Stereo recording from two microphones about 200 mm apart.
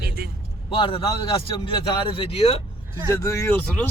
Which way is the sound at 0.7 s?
25° left (ahead or behind).